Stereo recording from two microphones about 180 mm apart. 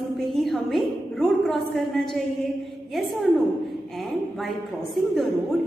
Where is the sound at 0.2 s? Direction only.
Centre (ahead or behind).